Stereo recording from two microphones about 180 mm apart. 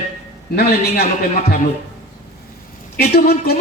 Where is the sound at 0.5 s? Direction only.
60° left (ahead or behind).